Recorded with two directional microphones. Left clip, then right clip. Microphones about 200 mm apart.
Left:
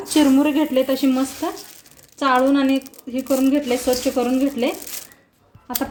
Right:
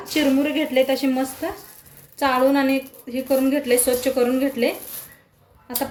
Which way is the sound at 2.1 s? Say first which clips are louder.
Left 1 dB; 30° left (ahead or behind).